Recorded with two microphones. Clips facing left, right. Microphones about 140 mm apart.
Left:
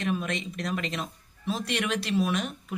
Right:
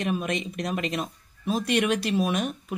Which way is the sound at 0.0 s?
15° right (ahead or behind).